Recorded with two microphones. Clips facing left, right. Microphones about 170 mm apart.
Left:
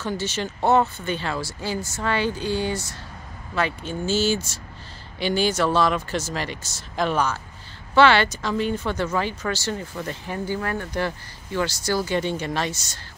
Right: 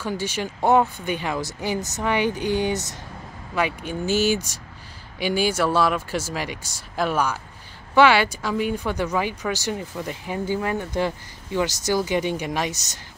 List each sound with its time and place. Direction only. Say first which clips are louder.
0.0 s speech: even; 10° right (ahead or behind)